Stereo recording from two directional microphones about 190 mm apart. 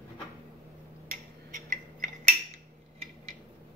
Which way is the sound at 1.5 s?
45° right (ahead or behind).